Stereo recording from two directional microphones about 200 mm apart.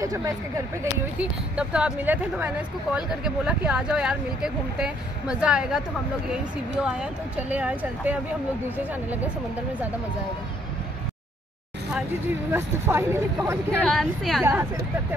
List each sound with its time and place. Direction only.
0.0 s speech: 15° right (ahead or behind)
1.1 s speech: 5° right (ahead or behind)
6.8 s speech: 5° right (ahead or behind)
12.5 s speech: 10° right (ahead or behind)
13.7 s speech: centre (ahead or behind)
14.4 s speech: 10° right (ahead or behind)